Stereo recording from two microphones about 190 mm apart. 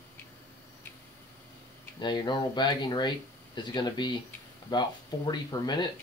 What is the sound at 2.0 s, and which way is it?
Speech, 25° left (ahead or behind).